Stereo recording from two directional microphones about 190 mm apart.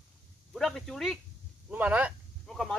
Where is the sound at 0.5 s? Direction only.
5° left (ahead or behind).